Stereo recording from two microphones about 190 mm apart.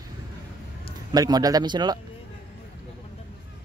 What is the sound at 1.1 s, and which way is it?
Speech, 20° right (ahead or behind).